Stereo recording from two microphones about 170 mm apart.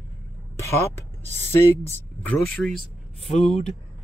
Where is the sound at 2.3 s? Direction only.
5° left (ahead or behind).